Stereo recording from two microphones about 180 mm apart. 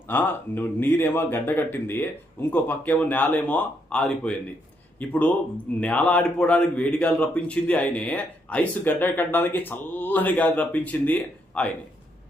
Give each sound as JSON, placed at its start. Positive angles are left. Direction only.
{"t": 0.1, "sound": "a man's voice", "side_deg": 10}